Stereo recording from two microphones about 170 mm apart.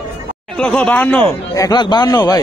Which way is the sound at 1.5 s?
20° left (ahead or behind).